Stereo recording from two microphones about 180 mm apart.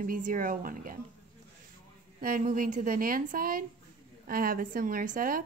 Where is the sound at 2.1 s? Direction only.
50° right (ahead or behind).